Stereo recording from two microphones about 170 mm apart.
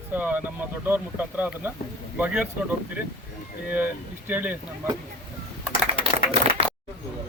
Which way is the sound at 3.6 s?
10° right (ahead or behind).